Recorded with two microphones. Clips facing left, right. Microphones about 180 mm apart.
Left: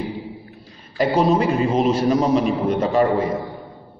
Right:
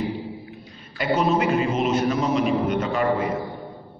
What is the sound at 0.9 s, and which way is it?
A man's voice, 35° left (ahead or behind).